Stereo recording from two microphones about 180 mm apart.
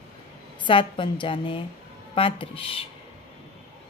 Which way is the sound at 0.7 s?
30° left (ahead or behind).